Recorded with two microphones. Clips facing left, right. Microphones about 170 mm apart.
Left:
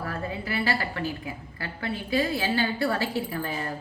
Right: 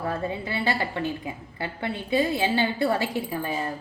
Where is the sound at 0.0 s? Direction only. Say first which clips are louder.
Right 4 dB; 25° right (ahead or behind).